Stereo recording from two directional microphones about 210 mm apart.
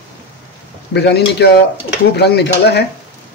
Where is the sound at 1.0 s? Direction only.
55° left (ahead or behind).